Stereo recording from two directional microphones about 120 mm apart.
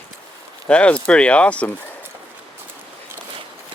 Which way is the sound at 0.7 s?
10° left (ahead or behind).